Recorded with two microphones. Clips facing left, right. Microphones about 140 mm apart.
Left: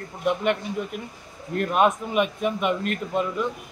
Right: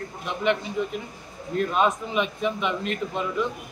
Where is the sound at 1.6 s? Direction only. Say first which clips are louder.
Left 2 dB; 55° left (ahead or behind).